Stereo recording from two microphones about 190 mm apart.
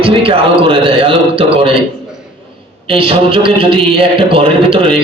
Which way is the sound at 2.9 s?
30° right (ahead or behind).